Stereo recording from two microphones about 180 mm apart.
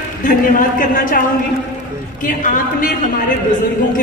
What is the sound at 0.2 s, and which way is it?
A woman's voice, 50° left (ahead or behind).